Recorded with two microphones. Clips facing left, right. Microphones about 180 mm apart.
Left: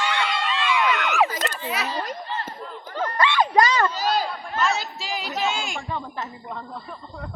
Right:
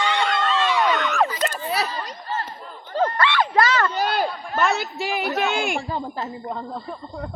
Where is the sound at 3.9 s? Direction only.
60° right (ahead or behind).